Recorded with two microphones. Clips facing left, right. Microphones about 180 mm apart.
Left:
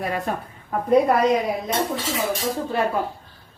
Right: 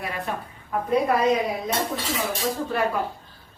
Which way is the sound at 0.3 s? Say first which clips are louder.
Left 3 dB; 40° left (ahead or behind).